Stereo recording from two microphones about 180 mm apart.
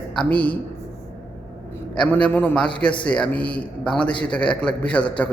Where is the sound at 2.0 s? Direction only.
5° left (ahead or behind).